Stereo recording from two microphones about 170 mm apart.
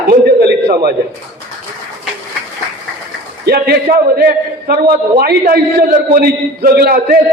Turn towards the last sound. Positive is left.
turn(degrees=-60)  # may be behind; listen again after turning